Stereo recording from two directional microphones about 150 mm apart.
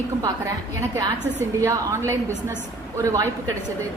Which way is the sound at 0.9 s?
20° right (ahead or behind).